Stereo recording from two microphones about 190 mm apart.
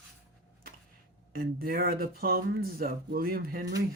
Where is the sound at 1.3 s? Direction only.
50° right (ahead or behind).